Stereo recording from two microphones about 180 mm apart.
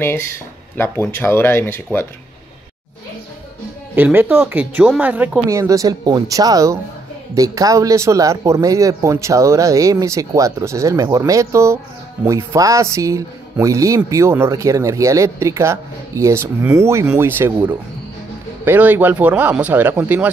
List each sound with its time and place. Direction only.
0.7 s speech: 15° left (ahead or behind)
3.9 s speech: 10° right (ahead or behind)